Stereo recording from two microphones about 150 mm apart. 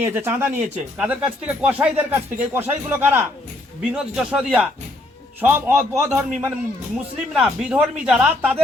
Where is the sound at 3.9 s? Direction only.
5° right (ahead or behind).